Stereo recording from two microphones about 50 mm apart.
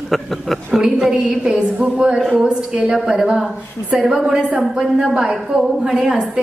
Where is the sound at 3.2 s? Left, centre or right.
Centre.